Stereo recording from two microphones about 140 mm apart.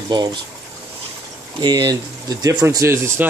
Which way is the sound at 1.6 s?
30° right (ahead or behind).